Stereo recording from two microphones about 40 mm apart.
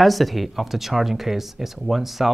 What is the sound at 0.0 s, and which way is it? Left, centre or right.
Speech, centre.